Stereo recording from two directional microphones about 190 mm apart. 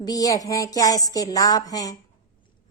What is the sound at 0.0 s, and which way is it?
A woman's voice, 20° left (ahead or behind).